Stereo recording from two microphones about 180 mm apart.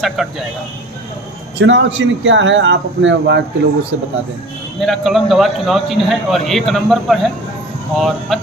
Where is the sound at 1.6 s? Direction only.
90° right.